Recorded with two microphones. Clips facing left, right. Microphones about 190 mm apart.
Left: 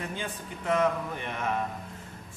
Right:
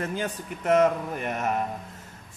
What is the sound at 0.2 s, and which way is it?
Speech, 45° right (ahead or behind).